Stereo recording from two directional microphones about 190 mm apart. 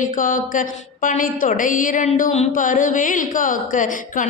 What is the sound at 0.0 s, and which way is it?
Mantra, 45° left (ahead or behind).